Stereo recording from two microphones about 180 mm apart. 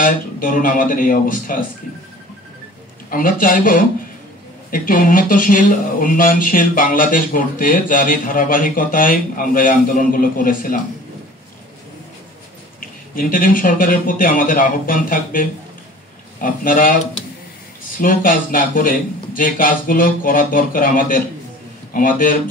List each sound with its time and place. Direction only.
0.0 s speech: 50° left (ahead or behind)
3.1 s speech: 50° left (ahead or behind)
13.3 s speech: 50° left (ahead or behind)